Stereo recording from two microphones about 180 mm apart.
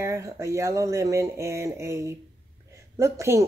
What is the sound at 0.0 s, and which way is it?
Speech, 15° right (ahead or behind).